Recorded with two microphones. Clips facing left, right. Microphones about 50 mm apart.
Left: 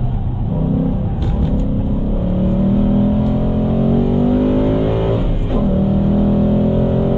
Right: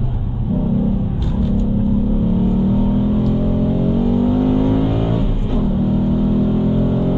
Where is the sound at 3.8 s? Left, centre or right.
Centre.